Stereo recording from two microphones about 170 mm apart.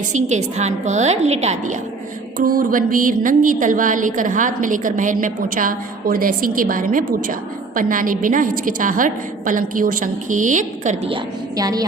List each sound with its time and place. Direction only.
0.1 s a woman's voice: 45° right (ahead or behind)
2.4 s a woman's voice: 55° right (ahead or behind)
11.1 s a woman's voice: 20° right (ahead or behind)